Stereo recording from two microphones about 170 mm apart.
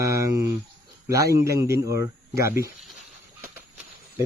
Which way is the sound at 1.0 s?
20° right (ahead or behind).